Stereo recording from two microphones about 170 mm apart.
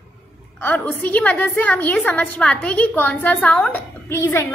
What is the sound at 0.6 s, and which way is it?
A woman's voice, 10° left (ahead or behind).